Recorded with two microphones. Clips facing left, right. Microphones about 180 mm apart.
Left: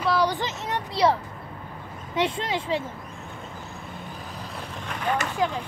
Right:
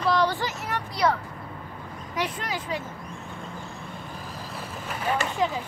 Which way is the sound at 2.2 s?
25° left (ahead or behind).